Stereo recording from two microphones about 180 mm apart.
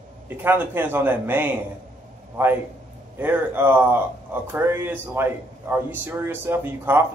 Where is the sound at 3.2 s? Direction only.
10° right (ahead or behind).